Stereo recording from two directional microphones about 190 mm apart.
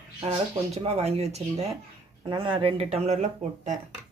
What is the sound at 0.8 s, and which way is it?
Speech, 35° right (ahead or behind).